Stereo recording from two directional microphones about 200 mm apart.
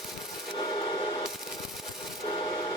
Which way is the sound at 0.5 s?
20° left (ahead or behind).